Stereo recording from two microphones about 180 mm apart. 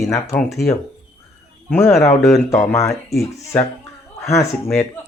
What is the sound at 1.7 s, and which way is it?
Speech, 15° left (ahead or behind).